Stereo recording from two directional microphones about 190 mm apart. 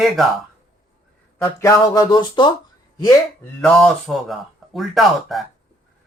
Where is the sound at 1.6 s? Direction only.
20° left (ahead or behind).